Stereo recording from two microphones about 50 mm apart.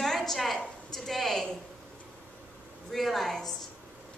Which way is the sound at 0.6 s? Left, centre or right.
Centre.